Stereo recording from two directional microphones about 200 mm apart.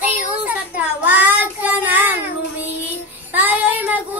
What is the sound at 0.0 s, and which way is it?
Child singing, 10° right (ahead or behind).